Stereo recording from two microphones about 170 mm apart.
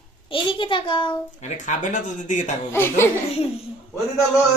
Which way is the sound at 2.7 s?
15° left (ahead or behind).